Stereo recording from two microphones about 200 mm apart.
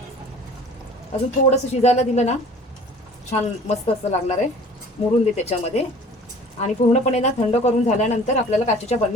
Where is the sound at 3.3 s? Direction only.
30° left (ahead or behind).